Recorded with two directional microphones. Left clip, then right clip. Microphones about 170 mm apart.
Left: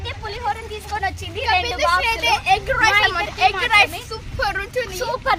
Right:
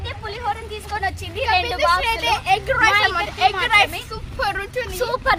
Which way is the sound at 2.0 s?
5° left (ahead or behind).